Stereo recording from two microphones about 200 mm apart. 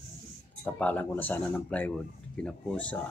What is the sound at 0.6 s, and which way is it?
Speech, 10° left (ahead or behind).